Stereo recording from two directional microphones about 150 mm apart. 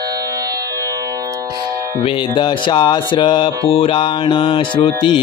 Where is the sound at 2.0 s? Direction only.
30° left (ahead or behind).